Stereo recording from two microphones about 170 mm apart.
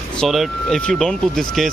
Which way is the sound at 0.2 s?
Centre (ahead or behind).